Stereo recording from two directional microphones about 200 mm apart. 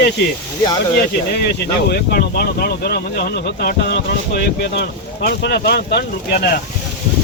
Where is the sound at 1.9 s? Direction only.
50° left (ahead or behind).